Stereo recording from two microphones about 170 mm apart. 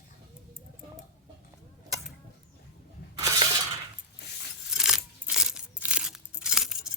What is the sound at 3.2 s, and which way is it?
Shatter, 20° right (ahead or behind).